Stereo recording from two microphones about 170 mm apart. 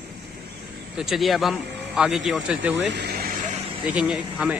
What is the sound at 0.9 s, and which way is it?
Speech, centre (ahead or behind).